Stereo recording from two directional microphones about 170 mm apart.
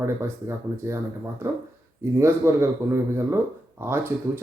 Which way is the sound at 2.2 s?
15° right (ahead or behind).